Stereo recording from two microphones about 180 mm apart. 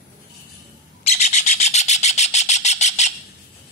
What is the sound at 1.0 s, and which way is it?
Bird, 40° left (ahead or behind).